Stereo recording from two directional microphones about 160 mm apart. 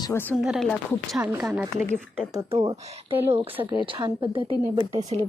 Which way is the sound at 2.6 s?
15° right (ahead or behind).